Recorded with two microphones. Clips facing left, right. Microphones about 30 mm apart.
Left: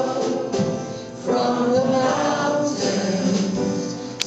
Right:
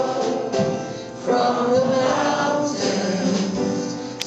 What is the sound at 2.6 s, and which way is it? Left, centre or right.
Music, centre.